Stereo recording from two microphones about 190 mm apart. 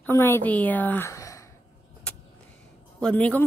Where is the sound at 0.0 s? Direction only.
10° left (ahead or behind).